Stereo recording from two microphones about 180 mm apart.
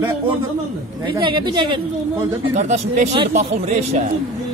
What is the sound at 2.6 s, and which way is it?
Speech, 40° right (ahead or behind).